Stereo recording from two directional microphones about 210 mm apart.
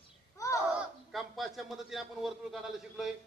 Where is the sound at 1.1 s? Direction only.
Centre (ahead or behind).